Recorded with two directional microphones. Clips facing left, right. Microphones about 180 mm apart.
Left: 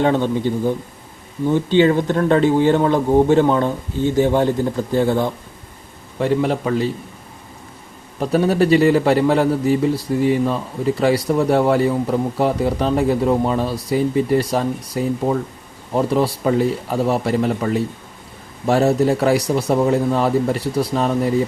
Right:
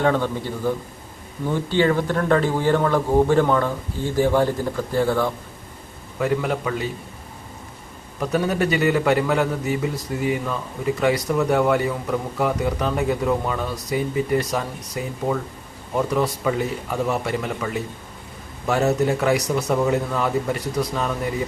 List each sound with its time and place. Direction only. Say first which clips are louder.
0.0 s a man's voice: left 4 dB; 20° left (ahead or behind)
8.2 s a man's voice: left 5 dB; 30° left (ahead or behind)